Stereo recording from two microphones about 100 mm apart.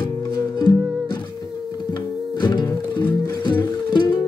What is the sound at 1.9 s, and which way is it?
Music, 50° left (ahead or behind).